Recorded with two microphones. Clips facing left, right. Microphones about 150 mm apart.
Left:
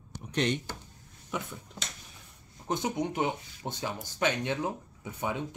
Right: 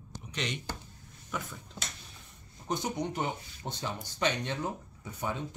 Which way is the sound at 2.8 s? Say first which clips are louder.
Left 4 dB; 10° left (ahead or behind).